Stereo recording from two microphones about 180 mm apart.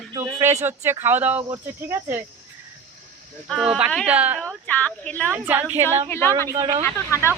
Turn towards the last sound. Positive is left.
turn(degrees=15)  # may be behind; listen again after turning